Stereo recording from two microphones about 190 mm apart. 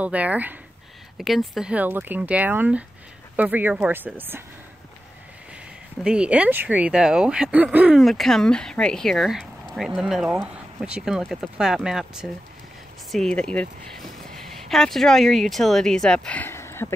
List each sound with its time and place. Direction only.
0.0 s speech: 5° right (ahead or behind)
6.0 s speech: 5° right (ahead or behind); by 16.9 s 15° left (ahead or behind)